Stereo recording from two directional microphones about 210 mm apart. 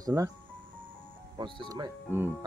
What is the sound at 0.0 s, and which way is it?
Speech, 15° right (ahead or behind).